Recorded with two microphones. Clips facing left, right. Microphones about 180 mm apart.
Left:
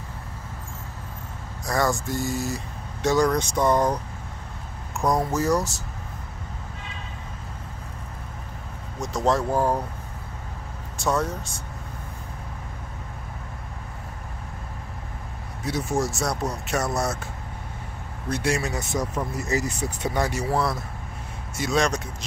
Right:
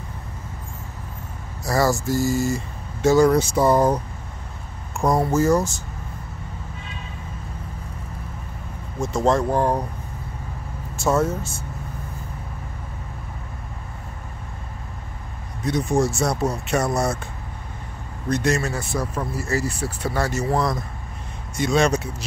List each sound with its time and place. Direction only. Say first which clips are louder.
1.6 s speech: right 4 dB; 5° right (ahead or behind)
5.0 s speech: right 4 dB; centre (ahead or behind)
9.0 s speech: right 3 dB; centre (ahead or behind)
11.0 s speech: right 4 dB; 5° right (ahead or behind)
15.6 s speech: right 5 dB; 5° left (ahead or behind)
18.3 s speech: right 3 dB; 10° left (ahead or behind)